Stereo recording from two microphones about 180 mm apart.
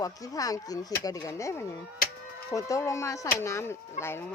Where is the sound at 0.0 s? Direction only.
20° left (ahead or behind).